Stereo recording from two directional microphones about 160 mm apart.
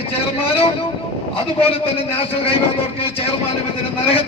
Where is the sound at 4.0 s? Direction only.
35° left (ahead or behind).